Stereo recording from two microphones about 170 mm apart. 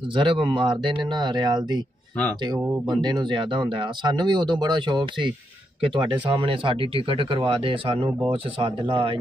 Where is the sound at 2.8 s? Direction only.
25° right (ahead or behind).